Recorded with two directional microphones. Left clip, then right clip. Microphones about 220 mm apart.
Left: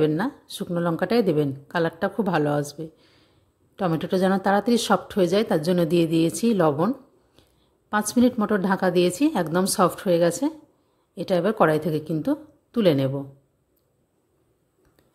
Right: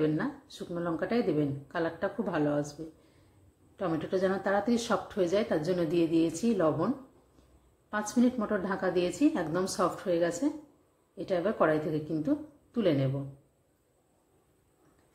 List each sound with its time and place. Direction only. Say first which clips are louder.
0.0 s speech: left 7 dB; 45° left (ahead or behind)
7.9 s speech: left 8 dB; 45° left (ahead or behind)